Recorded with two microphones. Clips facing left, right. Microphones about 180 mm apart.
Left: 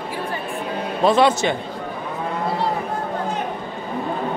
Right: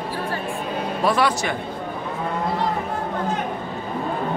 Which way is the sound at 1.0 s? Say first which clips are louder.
Left 5 dB; 25° left (ahead or behind).